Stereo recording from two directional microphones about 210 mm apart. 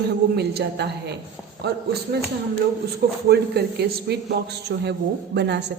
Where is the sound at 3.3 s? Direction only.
50° right (ahead or behind).